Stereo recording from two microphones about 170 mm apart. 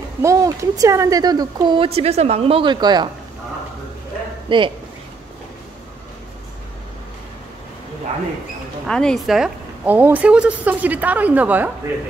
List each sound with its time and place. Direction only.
0.2 s a woman's voice: 15° right (ahead or behind)
4.5 s a woman's voice: 30° right (ahead or behind)
8.8 s a woman's voice: 5° left (ahead or behind)